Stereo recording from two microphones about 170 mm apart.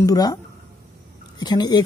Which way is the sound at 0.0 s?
20° left (ahead or behind).